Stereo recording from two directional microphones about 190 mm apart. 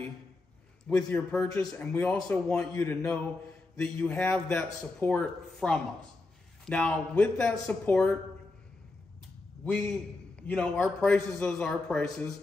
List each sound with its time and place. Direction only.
0.8 s a man's voice: 5° left (ahead or behind)
2.7 s a man's voice: 15° left (ahead or behind)
9.7 s a man's voice: 5° left (ahead or behind)